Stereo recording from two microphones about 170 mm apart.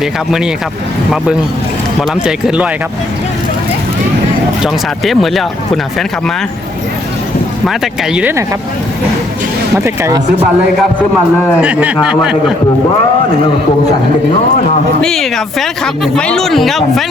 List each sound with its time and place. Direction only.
0.0 s speech: 5° right (ahead or behind)
2.0 s speech: 5° right (ahead or behind)
4.6 s speech: centre (ahead or behind)
7.7 s speech: 5° right (ahead or behind)
9.7 s speech: 15° right (ahead or behind)
11.6 s speech: 10° right (ahead or behind)
15.0 s speech: centre (ahead or behind)